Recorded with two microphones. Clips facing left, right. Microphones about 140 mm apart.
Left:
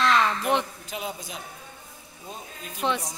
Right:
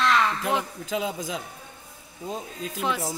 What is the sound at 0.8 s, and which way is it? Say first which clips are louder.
Speech: right 6 dB; 90° right.